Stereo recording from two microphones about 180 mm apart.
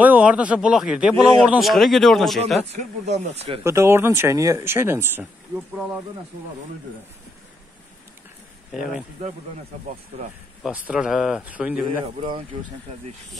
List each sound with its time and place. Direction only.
0.0 s speech: 10° right (ahead or behind)
2.7 s speech: 35° right (ahead or behind)
3.6 s speech: 15° right (ahead or behind)
10.9 s speech: 5° right (ahead or behind)
12.2 s speech: 30° right (ahead or behind)